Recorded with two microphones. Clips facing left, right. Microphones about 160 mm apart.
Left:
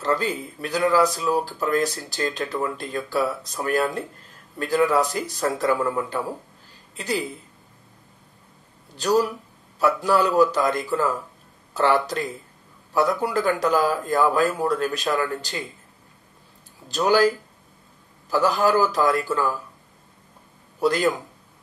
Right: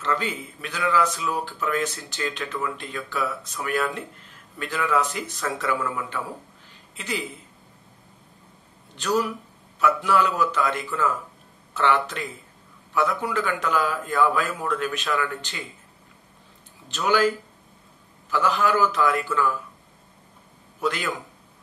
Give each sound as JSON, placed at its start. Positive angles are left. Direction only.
{"t": 0.0, "sound": "speech", "side_deg": 35}
{"t": 8.9, "sound": "speech", "side_deg": 35}
{"t": 16.8, "sound": "speech", "side_deg": 35}
{"t": 18.3, "sound": "speech", "side_deg": 40}
{"t": 20.8, "sound": "speech", "side_deg": 35}